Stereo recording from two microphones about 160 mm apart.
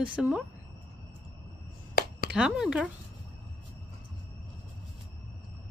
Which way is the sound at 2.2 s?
5° right (ahead or behind).